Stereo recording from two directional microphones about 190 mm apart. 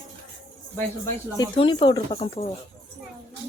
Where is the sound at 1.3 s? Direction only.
25° left (ahead or behind).